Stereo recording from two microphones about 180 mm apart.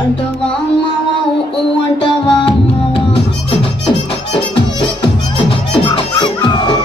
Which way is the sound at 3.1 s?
30° left (ahead or behind).